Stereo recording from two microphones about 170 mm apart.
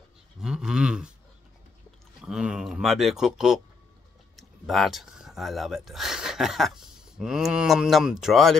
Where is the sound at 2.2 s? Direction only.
5° right (ahead or behind).